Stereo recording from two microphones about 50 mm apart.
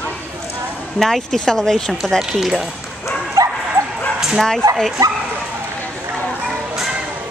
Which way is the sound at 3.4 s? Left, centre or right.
Right.